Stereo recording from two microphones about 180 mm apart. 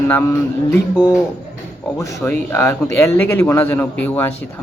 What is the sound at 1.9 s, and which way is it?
Speech, 15° left (ahead or behind).